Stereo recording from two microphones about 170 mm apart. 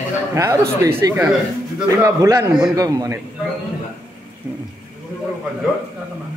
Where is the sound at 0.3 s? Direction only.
15° right (ahead or behind).